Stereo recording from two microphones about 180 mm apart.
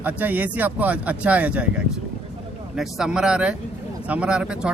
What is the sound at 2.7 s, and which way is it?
Speech, 5° right (ahead or behind).